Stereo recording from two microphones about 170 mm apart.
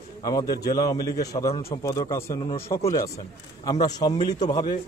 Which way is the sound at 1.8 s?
20° left (ahead or behind).